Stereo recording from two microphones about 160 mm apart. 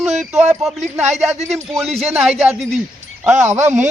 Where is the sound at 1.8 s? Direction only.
Centre (ahead or behind).